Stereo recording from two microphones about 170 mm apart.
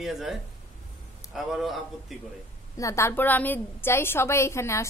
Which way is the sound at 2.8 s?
15° left (ahead or behind).